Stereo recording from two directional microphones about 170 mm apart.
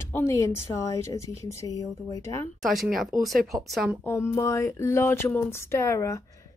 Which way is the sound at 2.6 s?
Centre (ahead or behind).